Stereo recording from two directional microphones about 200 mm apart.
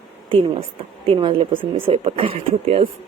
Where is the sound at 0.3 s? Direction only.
25° right (ahead or behind).